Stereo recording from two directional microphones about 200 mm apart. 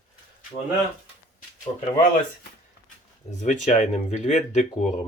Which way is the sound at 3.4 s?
35° left (ahead or behind).